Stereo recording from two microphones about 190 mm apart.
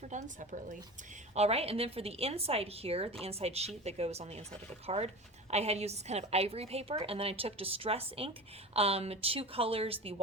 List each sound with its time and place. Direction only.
0.1 s a woman's voice: 40° right (ahead or behind)